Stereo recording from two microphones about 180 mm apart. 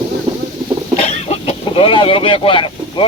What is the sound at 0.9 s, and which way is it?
Speech, 35° left (ahead or behind).